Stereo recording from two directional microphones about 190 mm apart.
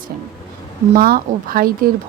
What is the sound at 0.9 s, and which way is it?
Speech, 50° right (ahead or behind).